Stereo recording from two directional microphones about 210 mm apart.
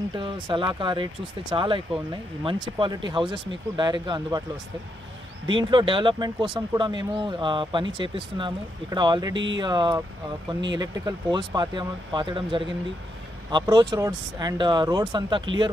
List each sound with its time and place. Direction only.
0.1 s speech: 25° right (ahead or behind)
5.7 s speech: 25° right (ahead or behind)
9.3 s speech: 60° right (ahead or behind)
9.6 s speech: 20° right (ahead or behind)